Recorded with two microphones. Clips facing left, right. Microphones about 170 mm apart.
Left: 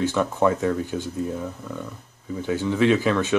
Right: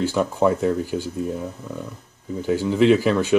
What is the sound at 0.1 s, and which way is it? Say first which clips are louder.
Speech: right 2 dB; 10° right (ahead or behind).